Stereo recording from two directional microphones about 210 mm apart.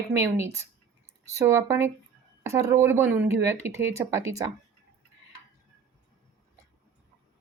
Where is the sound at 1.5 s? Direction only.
10° right (ahead or behind).